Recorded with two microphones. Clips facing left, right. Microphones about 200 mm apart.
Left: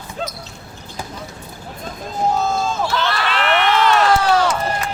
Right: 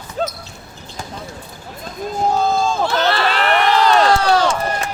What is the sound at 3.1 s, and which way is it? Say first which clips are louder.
Run: right 2 dB; 30° right (ahead or behind).